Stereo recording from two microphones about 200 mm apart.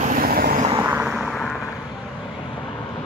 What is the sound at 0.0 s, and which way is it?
Vehicle, 45° right (ahead or behind).